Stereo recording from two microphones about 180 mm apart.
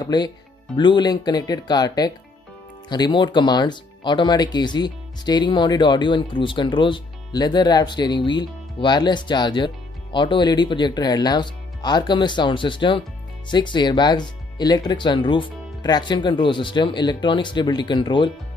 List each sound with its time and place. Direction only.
0.0 s speech: 25° left (ahead or behind)